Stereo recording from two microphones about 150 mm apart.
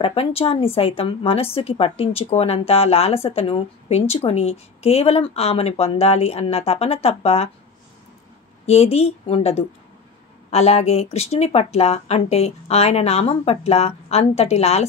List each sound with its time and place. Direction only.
0.0 s a woman's voice: 40° left (ahead or behind)
8.6 s speech: 45° left (ahead or behind)